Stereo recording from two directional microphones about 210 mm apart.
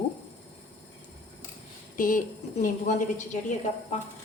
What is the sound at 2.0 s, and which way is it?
A woman's voice, 40° left (ahead or behind).